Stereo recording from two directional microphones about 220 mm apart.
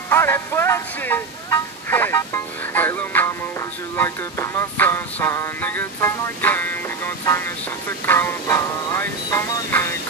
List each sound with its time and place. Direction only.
0.1 s speech: 10° left (ahead or behind)
8.0 s music: 10° left (ahead or behind)